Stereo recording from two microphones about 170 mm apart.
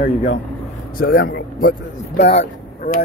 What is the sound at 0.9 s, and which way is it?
Speech, 70° left (ahead or behind).